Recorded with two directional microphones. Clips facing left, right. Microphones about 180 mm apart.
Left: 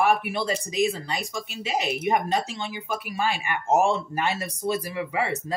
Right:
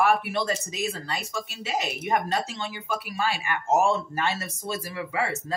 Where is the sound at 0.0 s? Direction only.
15° left (ahead or behind).